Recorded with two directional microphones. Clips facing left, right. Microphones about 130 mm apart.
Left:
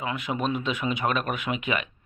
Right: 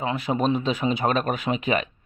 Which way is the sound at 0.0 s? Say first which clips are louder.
Right 5 dB; 30° right (ahead or behind).